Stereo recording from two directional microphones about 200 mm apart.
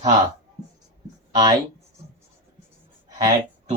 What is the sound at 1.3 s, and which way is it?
Speech, 20° right (ahead or behind).